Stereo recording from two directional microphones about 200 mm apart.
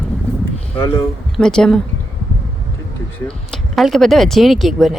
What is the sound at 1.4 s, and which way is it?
Speech, 5° left (ahead or behind).